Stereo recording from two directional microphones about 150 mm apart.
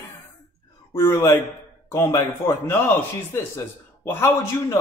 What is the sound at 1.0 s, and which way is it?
Speech, 20° left (ahead or behind).